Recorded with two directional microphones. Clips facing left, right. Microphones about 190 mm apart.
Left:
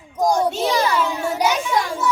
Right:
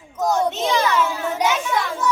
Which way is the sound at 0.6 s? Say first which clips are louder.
Left 1 dB; 35° left (ahead or behind).